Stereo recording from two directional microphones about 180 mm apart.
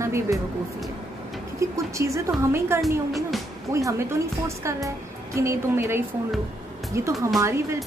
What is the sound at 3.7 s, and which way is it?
A woman's voice, 15° right (ahead or behind).